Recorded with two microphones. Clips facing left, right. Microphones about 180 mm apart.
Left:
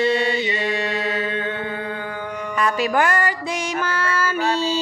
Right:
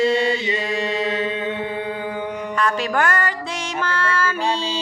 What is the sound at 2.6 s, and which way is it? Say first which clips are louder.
Music: left 2 dB; 5° left (ahead or behind).